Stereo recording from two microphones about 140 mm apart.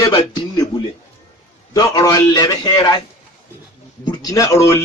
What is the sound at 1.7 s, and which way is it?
Speech, 25° left (ahead or behind).